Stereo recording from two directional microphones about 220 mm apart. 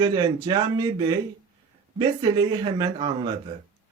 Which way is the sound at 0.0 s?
20° right (ahead or behind).